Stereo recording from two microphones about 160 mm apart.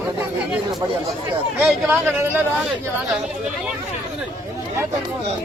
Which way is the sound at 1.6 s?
10° right (ahead or behind).